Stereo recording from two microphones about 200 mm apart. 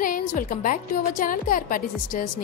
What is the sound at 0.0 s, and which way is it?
A woman's voice, 45° left (ahead or behind).